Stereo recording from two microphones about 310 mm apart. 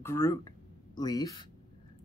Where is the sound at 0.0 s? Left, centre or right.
Centre.